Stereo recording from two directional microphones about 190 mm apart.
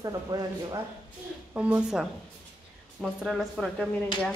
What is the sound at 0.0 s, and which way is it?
Speech, 20° right (ahead or behind).